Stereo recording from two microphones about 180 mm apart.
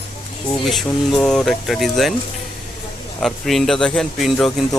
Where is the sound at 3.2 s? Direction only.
Centre (ahead or behind).